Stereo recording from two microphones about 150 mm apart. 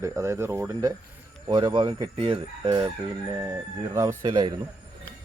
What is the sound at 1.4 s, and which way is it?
Speech, 30° right (ahead or behind).